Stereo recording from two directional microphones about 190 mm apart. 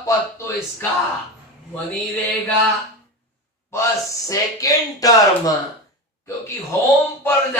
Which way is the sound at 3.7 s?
15° left (ahead or behind).